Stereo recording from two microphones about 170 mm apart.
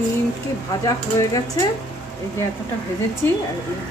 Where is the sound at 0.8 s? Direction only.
20° left (ahead or behind).